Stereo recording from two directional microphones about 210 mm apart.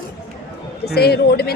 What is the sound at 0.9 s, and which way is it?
Speech, 50° left (ahead or behind).